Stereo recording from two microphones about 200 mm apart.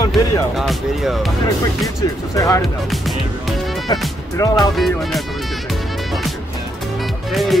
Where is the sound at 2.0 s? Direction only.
15° left (ahead or behind).